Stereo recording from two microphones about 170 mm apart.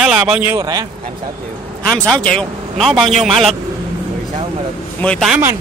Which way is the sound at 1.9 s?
5° left (ahead or behind).